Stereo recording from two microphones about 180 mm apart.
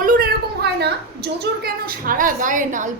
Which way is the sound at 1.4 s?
55° right (ahead or behind).